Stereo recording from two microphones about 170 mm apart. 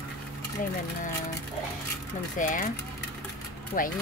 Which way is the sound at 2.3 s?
50° left (ahead or behind).